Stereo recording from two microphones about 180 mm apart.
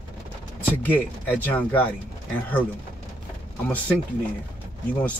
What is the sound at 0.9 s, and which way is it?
Speech, 10° left (ahead or behind).